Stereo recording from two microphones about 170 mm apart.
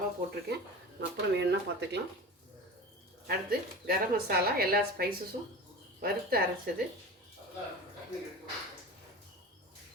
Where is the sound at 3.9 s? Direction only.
65° right (ahead or behind).